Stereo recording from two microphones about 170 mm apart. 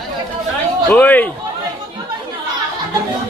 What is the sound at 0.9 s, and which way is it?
Speech, 10° left (ahead or behind).